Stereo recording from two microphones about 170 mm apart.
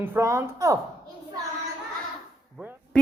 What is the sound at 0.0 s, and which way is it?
Speech, 15° right (ahead or behind).